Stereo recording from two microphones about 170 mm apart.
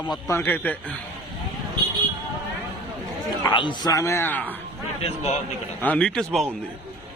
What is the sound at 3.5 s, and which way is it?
A man's voice, 30° left (ahead or behind).